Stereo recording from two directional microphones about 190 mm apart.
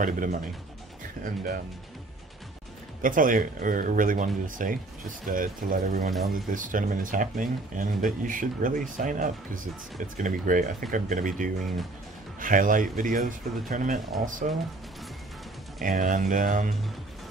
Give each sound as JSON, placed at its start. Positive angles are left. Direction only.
{"t": 0.0, "sound": "speech", "side_deg": -45}
{"t": 3.0, "sound": "speech", "side_deg": -45}
{"t": 15.8, "sound": "speech", "side_deg": -45}